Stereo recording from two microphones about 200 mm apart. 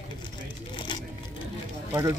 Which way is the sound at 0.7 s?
25° left (ahead or behind).